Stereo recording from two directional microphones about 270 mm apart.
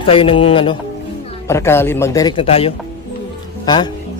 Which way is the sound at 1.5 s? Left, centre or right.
Centre.